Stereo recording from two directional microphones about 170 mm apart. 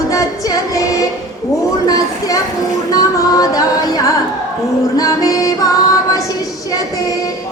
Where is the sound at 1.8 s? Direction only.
20° left (ahead or behind).